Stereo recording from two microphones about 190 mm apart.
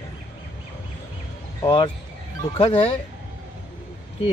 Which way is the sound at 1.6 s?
25° left (ahead or behind).